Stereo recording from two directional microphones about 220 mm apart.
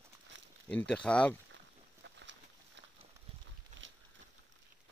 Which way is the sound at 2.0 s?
55° right (ahead or behind).